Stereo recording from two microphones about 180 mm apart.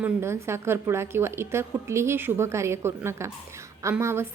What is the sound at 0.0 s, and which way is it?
A woman's voice, 15° right (ahead or behind).